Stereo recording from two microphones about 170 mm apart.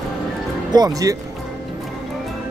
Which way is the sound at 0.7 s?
25° right (ahead or behind).